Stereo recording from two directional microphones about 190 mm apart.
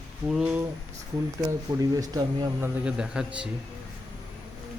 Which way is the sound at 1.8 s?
20° right (ahead or behind).